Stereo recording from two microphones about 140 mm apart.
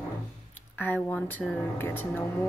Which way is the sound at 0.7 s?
15° left (ahead or behind).